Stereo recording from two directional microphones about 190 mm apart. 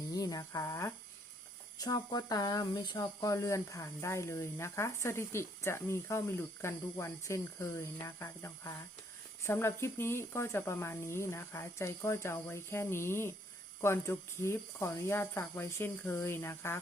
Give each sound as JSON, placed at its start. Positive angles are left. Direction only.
{"t": 0.1, "sound": "speech", "side_deg": 20}